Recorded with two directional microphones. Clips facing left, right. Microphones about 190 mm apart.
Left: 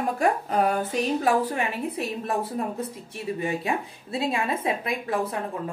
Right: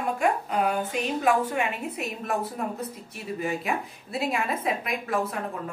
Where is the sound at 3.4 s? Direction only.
30° left (ahead or behind).